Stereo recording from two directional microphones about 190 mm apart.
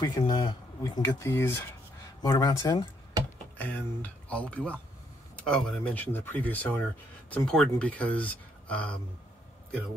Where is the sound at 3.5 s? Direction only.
10° left (ahead or behind).